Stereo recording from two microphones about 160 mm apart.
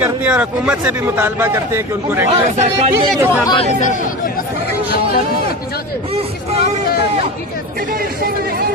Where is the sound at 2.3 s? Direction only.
40° right (ahead or behind).